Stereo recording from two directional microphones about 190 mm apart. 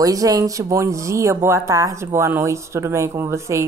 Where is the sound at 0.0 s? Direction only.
20° right (ahead or behind).